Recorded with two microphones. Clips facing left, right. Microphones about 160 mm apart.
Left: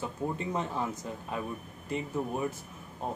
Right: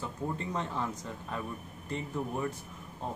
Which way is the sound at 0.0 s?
15° left (ahead or behind).